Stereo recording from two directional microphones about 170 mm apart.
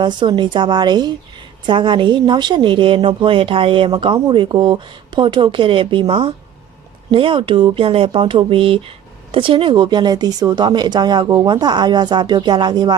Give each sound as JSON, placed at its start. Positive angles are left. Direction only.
{"t": 0.0, "sound": "a woman's voice", "side_deg": -25}